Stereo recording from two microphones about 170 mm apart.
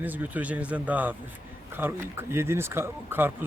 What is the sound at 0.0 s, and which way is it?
Speech, 10° right (ahead or behind).